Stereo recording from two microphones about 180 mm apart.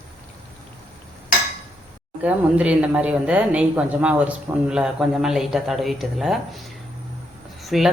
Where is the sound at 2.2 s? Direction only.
5° right (ahead or behind).